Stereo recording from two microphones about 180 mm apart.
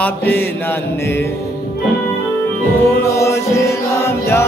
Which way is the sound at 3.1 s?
15° left (ahead or behind).